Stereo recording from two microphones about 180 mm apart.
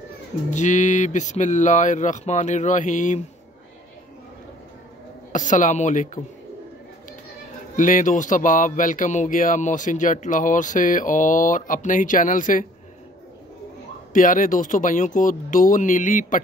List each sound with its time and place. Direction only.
0.5 s speech: 45° left (ahead or behind)
5.3 s speech: 45° left (ahead or behind)
7.7 s speech: 45° left (ahead or behind)
14.1 s speech: 50° left (ahead or behind)